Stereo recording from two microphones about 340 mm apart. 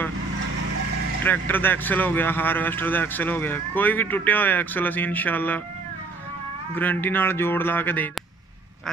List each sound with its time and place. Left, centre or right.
1.2 s speech: centre
6.7 s speech: centre